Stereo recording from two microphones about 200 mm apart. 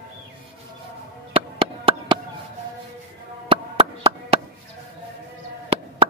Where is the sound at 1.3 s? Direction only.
30° right (ahead or behind).